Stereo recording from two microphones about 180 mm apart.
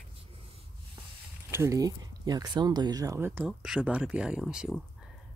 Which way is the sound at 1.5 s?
15° right (ahead or behind).